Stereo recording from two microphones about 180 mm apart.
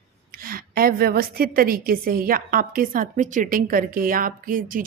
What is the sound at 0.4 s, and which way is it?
A woman's voice, 55° right (ahead or behind).